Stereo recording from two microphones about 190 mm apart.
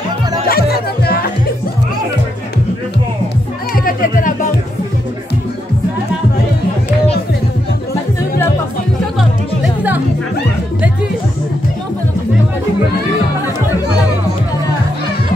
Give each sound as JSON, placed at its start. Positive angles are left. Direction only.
{"t": 0.5, "sound": "music", "side_deg": 55}
{"t": 3.7, "sound": "music", "side_deg": 50}